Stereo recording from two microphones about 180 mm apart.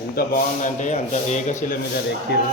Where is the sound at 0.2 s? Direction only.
50° left (ahead or behind).